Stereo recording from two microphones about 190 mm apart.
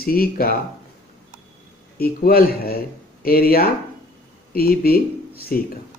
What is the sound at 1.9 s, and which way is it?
Speech, 50° left (ahead or behind).